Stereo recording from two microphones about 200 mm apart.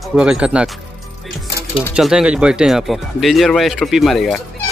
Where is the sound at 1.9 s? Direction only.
5° right (ahead or behind).